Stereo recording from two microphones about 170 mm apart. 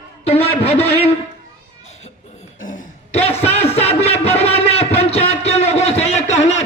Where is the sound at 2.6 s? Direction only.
50° left (ahead or behind).